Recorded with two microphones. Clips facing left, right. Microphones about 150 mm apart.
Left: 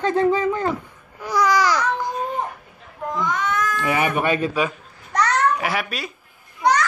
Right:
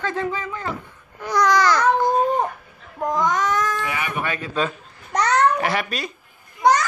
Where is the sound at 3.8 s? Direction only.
35° left (ahead or behind).